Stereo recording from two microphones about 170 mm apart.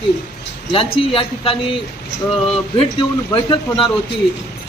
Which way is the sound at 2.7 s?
30° left (ahead or behind).